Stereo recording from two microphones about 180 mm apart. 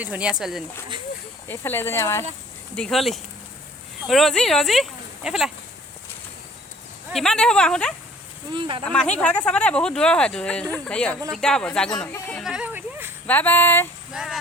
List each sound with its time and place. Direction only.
0.0 s speech: 5° right (ahead or behind)
1.5 s speech: 10° left (ahead or behind)
2.7 s speech: 5° left (ahead or behind)
7.1 s speech: centre (ahead or behind)
8.5 s speech: 25° right (ahead or behind)
8.8 s speech: 5° left (ahead or behind)
12.4 s a sound: 5° right (ahead or behind)
13.2 s speech: 10° left (ahead or behind)
14.1 s speech: 5° right (ahead or behind)